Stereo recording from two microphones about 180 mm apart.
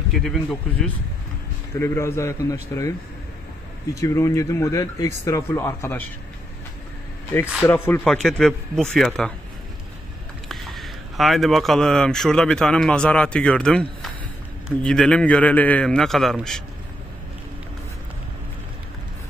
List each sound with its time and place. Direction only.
0.1 s a man's voice: centre (ahead or behind)
1.8 s speech: 15° left (ahead or behind)
4.0 s speech: 15° left (ahead or behind)
7.6 s a man's voice: 10° left (ahead or behind)
10.5 s a man's voice: centre (ahead or behind)